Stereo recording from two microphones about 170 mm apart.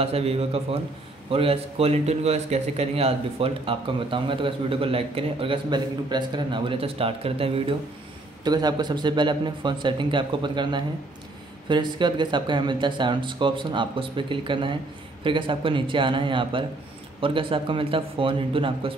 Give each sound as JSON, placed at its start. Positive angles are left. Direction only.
{"t": 0.0, "sound": "a man's voice", "side_deg": -35}